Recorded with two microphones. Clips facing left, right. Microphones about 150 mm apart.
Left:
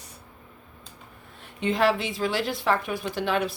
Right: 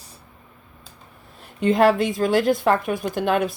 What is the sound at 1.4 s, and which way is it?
A woman's voice, 45° right (ahead or behind).